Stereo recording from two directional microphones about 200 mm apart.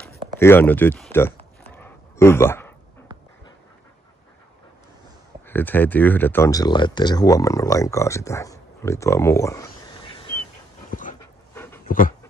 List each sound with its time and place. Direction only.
0.0 s speech: 10° left (ahead or behind)
1.1 s a sound: 10° left (ahead or behind)
5.5 s speech: 10° left (ahead or behind)
10.9 s dog: 40° left (ahead or behind)
11.1 s dog: 10° left (ahead or behind)